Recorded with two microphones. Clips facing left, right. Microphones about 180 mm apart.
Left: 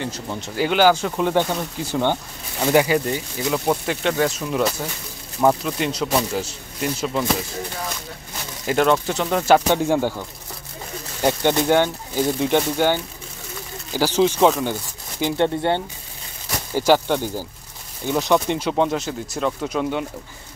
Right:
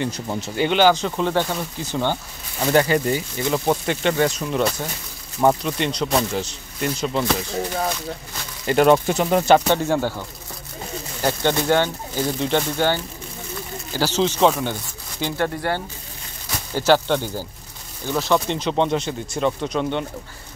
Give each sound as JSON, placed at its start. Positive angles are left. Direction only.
{"t": 0.0, "sound": "speech", "side_deg": -15}
{"t": 0.4, "sound": "speech", "side_deg": 5}
{"t": 3.1, "sound": "speech", "side_deg": 0}
{"t": 8.8, "sound": "speech", "side_deg": -15}
{"t": 9.5, "sound": "speech", "side_deg": 10}
{"t": 11.2, "sound": "speech", "side_deg": 15}
{"t": 16.7, "sound": "speech", "side_deg": 10}